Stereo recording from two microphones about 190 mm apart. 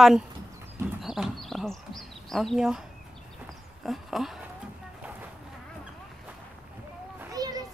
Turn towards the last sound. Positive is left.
turn(degrees=-20)  # may be behind; listen again after turning